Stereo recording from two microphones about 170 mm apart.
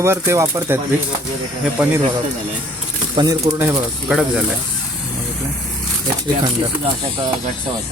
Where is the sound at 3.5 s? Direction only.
15° right (ahead or behind).